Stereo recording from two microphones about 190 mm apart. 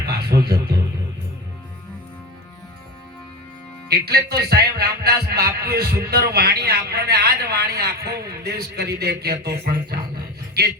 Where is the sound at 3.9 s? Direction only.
55° right (ahead or behind).